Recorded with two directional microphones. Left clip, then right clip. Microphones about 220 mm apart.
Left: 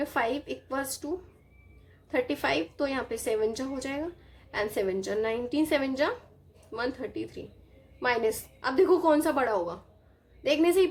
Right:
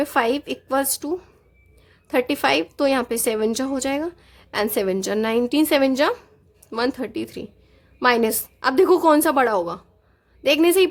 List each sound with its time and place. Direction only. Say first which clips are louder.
0.0 s a woman's voice: right 9 dB; 40° right (ahead or behind)